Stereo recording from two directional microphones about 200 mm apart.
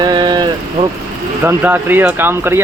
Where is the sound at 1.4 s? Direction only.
10° right (ahead or behind).